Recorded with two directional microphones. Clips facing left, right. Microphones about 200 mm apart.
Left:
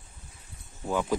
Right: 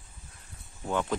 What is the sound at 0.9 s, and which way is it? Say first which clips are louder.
Speech: left 2 dB; 5° left (ahead or behind).